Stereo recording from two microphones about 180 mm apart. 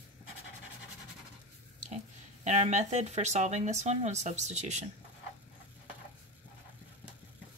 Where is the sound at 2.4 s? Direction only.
40° right (ahead or behind).